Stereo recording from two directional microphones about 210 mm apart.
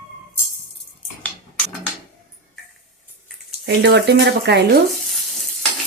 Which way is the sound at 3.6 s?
55° right (ahead or behind).